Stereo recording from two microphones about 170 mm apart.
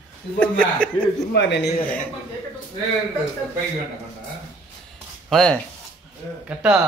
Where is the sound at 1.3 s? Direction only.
90° left.